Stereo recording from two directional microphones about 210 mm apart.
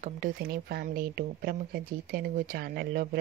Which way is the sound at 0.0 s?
45° right (ahead or behind).